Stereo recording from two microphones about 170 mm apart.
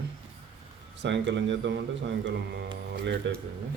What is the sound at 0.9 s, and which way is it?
Speech, 90° right.